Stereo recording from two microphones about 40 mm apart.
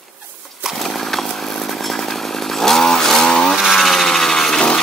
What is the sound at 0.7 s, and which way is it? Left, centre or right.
Chainsaw, centre.